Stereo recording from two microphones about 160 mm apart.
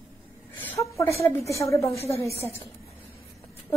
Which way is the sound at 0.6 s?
15° left (ahead or behind).